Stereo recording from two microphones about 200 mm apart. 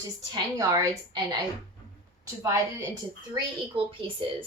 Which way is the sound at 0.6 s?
15° right (ahead or behind).